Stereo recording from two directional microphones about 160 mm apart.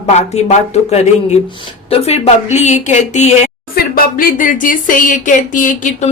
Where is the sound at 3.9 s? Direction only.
60° left (ahead or behind).